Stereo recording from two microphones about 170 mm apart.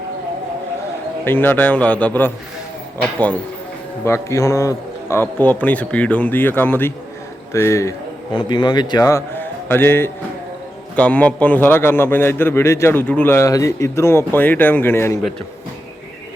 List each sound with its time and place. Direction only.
1.2 s a man's voice: 10° left (ahead or behind)
4.0 s a man's voice: 15° left (ahead or behind)